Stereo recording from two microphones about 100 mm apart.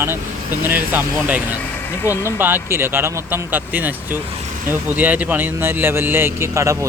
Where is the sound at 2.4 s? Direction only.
20° right (ahead or behind).